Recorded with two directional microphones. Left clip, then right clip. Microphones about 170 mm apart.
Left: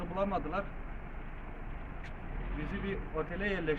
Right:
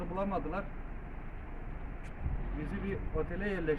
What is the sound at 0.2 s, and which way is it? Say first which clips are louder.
Speech: left 2 dB; 15° right (ahead or behind).